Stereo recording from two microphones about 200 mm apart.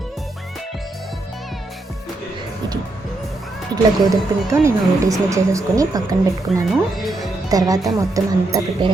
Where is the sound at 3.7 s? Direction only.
15° right (ahead or behind).